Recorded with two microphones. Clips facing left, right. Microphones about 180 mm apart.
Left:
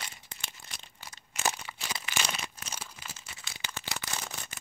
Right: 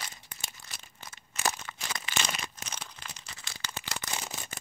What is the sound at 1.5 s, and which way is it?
Crumpling, 10° left (ahead or behind).